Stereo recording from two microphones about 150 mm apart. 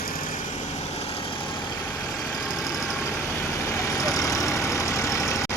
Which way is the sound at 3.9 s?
20° left (ahead or behind).